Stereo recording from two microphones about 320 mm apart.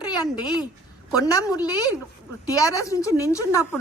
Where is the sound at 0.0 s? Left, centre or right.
Centre.